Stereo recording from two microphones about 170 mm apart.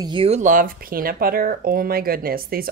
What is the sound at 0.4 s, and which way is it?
A woman's voice, 50° right (ahead or behind).